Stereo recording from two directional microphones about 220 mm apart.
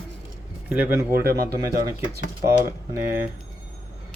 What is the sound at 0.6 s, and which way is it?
Speech, 5° right (ahead or behind).